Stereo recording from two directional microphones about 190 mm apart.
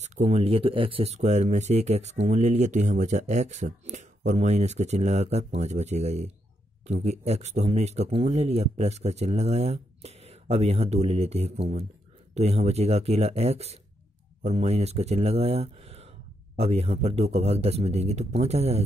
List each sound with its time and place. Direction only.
0.0 s speech: 35° right (ahead or behind)